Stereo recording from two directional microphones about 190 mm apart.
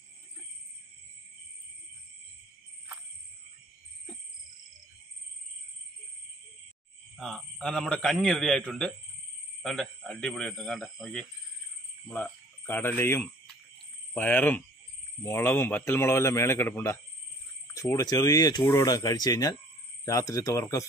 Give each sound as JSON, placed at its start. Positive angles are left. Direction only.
{"t": 7.2, "sound": "a man's voice", "side_deg": 5}